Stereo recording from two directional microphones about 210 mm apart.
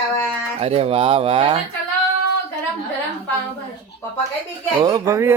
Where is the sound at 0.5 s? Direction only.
30° right (ahead or behind).